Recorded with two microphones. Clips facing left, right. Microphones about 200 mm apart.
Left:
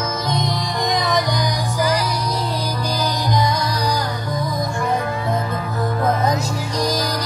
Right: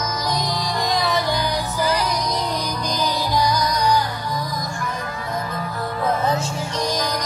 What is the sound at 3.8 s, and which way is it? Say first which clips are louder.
Music: right 2 dB; 35° left (ahead or behind).